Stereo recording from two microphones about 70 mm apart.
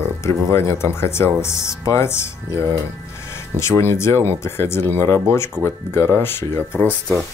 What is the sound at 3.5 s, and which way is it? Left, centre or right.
Speech, left.